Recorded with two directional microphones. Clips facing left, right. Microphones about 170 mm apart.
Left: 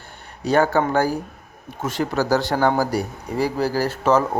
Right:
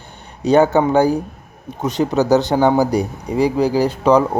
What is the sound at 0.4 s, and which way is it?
Speech, 20° right (ahead or behind).